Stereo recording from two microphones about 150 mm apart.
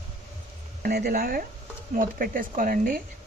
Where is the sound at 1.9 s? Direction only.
70° right (ahead or behind).